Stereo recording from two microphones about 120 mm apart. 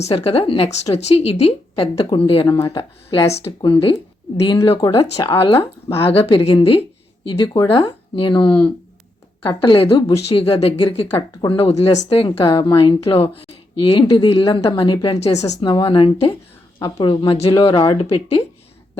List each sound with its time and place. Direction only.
0.0 s speech: 55° left (ahead or behind)
0.7 s speech: 65° left (ahead or behind)
3.6 s speech: 45° left (ahead or behind)
7.3 s speech: 40° left (ahead or behind)
11.7 s speech: 65° left (ahead or behind)
12.0 s speech: 50° left (ahead or behind)
15.4 s speech: 30° left (ahead or behind); by 18.4 s 50° left (ahead or behind)